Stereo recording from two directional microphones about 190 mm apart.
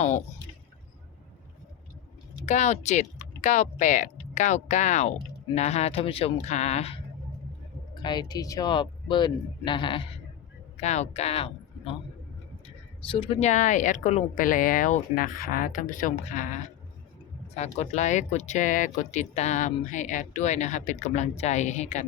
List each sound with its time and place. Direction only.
2.5 s speech: 35° left (ahead or behind)
10.8 s speech: 35° left (ahead or behind)